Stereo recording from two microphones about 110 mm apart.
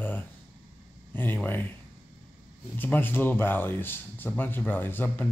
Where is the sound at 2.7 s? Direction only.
20° left (ahead or behind).